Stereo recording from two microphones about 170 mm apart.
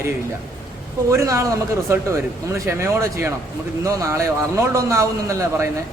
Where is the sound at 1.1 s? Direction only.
15° right (ahead or behind).